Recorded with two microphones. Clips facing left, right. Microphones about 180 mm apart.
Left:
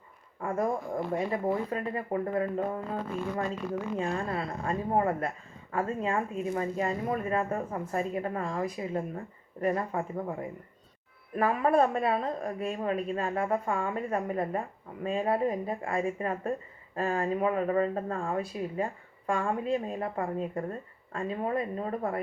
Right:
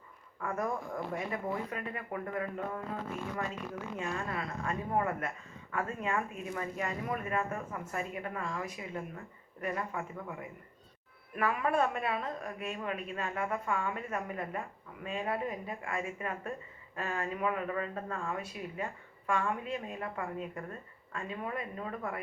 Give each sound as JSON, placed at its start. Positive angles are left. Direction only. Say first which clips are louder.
{"t": 0.3, "sound": "speech", "louder": "left 5 dB", "side_deg": 30}